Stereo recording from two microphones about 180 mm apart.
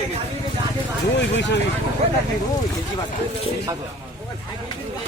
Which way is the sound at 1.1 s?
75° left (ahead or behind).